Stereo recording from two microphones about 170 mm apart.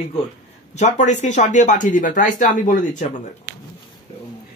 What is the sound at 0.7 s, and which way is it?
Speech, 45° left (ahead or behind).